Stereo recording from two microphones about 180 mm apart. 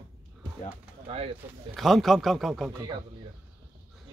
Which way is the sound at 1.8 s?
Centre (ahead or behind).